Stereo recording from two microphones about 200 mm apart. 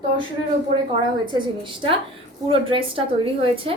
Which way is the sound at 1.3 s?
25° right (ahead or behind).